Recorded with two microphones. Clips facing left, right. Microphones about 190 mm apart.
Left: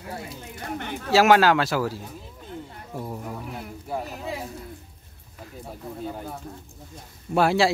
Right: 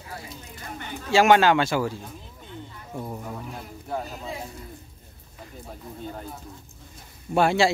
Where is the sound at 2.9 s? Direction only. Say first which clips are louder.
Left 1 dB; 5° left (ahead or behind).